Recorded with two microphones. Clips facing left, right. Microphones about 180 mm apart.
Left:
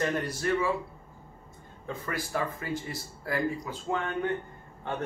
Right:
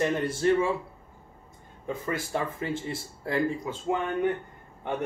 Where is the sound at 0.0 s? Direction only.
25° right (ahead or behind).